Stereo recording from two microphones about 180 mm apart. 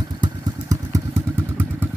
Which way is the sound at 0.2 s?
20° right (ahead or behind).